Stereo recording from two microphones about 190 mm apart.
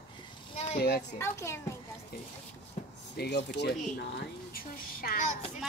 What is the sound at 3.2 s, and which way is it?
Speech, 60° left (ahead or behind).